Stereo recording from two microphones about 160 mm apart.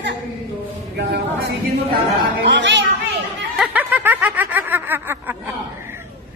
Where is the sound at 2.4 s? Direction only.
90° right.